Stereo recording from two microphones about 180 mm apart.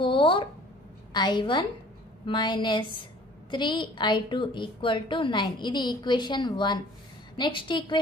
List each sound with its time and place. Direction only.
0.0 s a woman's voice: 30° left (ahead or behind)